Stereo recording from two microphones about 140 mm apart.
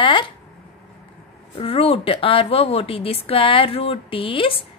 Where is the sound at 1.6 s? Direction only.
45° left (ahead or behind).